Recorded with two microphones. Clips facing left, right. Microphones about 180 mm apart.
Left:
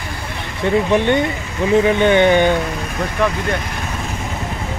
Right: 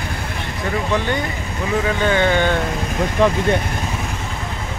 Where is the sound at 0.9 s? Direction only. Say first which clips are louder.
Left 6 dB; 25° left (ahead or behind).